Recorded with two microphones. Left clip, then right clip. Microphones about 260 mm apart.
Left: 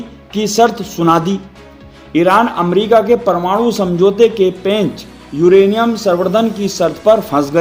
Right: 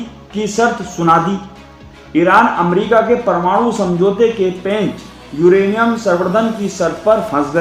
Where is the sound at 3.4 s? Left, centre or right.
Left.